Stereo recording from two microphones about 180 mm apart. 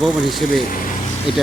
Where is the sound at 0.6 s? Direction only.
50° left (ahead or behind).